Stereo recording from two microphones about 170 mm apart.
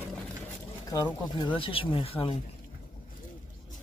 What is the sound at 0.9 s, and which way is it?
Speech, 25° left (ahead or behind).